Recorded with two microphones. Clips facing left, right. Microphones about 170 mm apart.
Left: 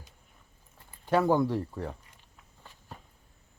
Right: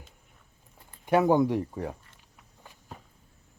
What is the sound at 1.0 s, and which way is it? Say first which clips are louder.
Speech: right 3 dB; 15° right (ahead or behind).